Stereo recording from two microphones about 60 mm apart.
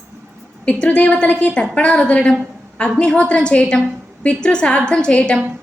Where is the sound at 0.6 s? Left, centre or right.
Centre.